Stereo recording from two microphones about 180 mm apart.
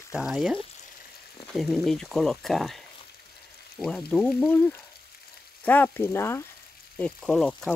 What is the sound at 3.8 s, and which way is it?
Speech, 5° left (ahead or behind).